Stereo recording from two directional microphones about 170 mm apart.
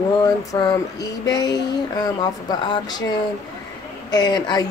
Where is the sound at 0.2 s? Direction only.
20° left (ahead or behind).